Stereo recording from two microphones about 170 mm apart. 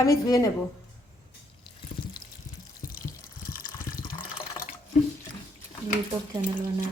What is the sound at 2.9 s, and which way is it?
Water, 55° left (ahead or behind).